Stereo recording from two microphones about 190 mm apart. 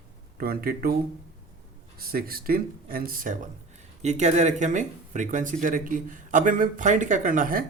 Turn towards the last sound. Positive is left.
turn(degrees=-45)  # may be behind; listen again after turning